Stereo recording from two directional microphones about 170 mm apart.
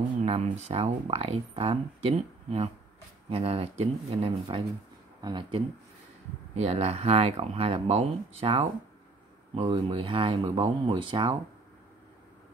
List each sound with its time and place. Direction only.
0.2 s speech: 35° right (ahead or behind)
6.5 s speech: 40° right (ahead or behind)